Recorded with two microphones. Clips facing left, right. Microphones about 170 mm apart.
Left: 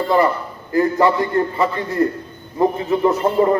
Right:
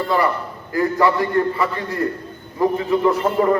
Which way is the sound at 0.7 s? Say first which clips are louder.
Left 2 dB; 25° left (ahead or behind).